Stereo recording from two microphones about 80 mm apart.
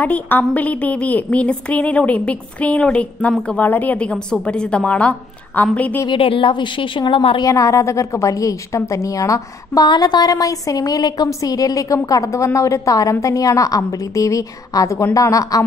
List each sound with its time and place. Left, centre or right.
0.0 s a woman's voice: centre
6.0 s a woman's voice: left
7.4 s a woman's voice: left
9.8 s a woman's voice: left